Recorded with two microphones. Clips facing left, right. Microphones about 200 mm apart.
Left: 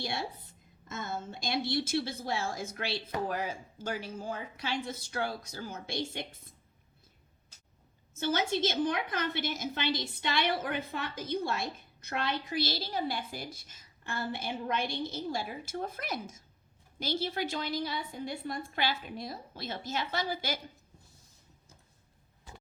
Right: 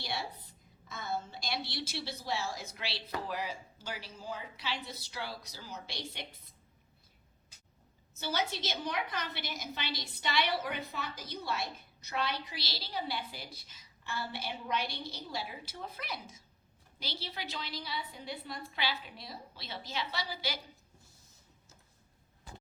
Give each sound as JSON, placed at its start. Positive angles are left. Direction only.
{"t": 1.2, "sound": "a woman's voice", "side_deg": 50}
{"t": 8.1, "sound": "a woman's voice", "side_deg": 50}